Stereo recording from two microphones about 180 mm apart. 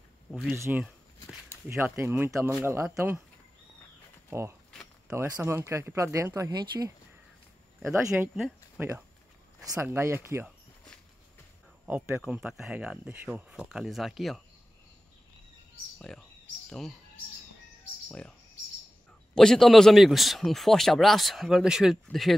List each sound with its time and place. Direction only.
0.3 s a man's voice: centre (ahead or behind)
0.6 s speech: 15° right (ahead or behind)
4.3 s speech: 15° right (ahead or behind)
8.1 s speech: centre (ahead or behind)
11.8 s a man's voice: 10° right (ahead or behind)
16.0 s speech: 5° left (ahead or behind)
19.3 s a man's voice: 5° left (ahead or behind)